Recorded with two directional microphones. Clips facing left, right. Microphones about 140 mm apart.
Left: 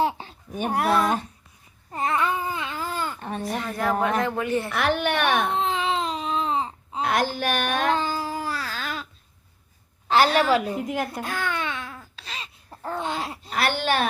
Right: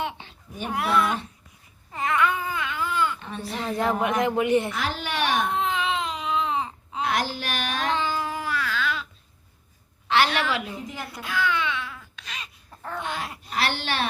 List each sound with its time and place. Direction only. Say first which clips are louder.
0.0 s speech: left 7 dB; 35° left (ahead or behind)
1.9 s babbling: even; 35° left (ahead or behind)
3.6 s speech: right 1 dB; 25° right (ahead or behind)
4.7 s speech: left 6 dB; 60° left (ahead or behind)
5.5 s baby cry: left 1 dB; 30° left (ahead or behind)
7.0 s a sound: left 3 dB; 50° left (ahead or behind)
7.9 s child singing: left 1 dB; 40° left (ahead or behind)
10.1 s a woman's voice: left 4 dB; 40° left (ahead or behind)
10.8 s baby cry: left 7 dB; 55° left (ahead or behind); by 13.5 s 30° left (ahead or behind)
13.6 s a sound: left 4 dB; 50° left (ahead or behind)